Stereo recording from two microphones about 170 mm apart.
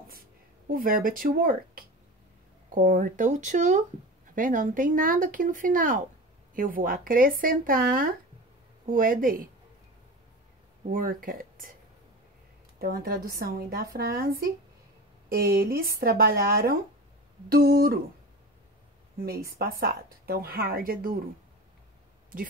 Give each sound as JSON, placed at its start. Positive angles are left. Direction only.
{"t": 0.7, "sound": "speech", "side_deg": -55}
{"t": 10.9, "sound": "speech", "side_deg": -55}
{"t": 12.7, "sound": "speech", "side_deg": -60}
{"t": 19.6, "sound": "speech", "side_deg": -60}